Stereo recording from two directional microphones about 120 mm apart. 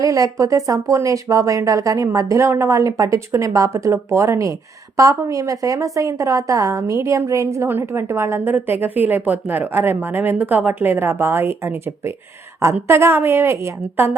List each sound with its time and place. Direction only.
0.0 s a woman's voice: 30° right (ahead or behind)